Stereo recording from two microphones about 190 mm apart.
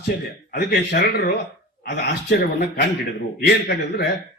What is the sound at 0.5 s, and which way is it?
A man's voice, 60° left (ahead or behind).